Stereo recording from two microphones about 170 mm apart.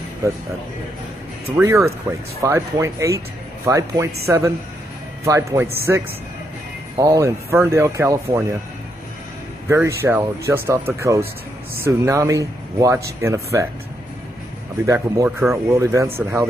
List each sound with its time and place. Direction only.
1.5 s speech: 15° right (ahead or behind)
5.2 s speech: 20° right (ahead or behind)
9.7 s speech: 15° right (ahead or behind)
14.9 s speech: 15° right (ahead or behind)